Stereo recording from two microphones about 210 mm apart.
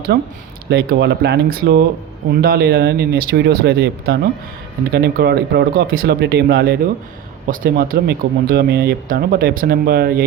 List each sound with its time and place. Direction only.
0.1 s speech: 50° right (ahead or behind)